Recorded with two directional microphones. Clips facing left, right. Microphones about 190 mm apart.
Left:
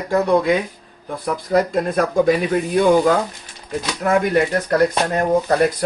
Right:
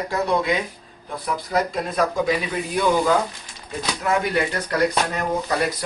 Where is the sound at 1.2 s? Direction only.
50° left (ahead or behind).